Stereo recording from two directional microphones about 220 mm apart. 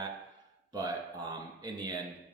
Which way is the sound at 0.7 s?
15° right (ahead or behind).